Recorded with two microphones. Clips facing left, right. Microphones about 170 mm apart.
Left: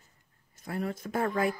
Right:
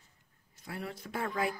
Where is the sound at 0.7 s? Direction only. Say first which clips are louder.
Left 7 dB; 45° left (ahead or behind).